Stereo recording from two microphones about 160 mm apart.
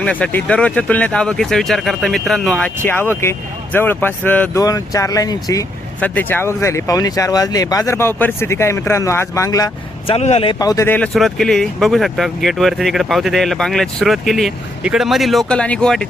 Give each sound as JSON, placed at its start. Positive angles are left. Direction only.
{"t": 0.0, "sound": "speech", "side_deg": 10}
{"t": 4.6, "sound": "speech", "side_deg": 20}
{"t": 6.0, "sound": "speech", "side_deg": 10}
{"t": 10.1, "sound": "speech", "side_deg": 40}